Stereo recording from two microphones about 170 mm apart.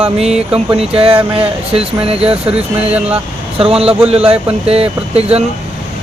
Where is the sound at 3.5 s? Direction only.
35° right (ahead or behind).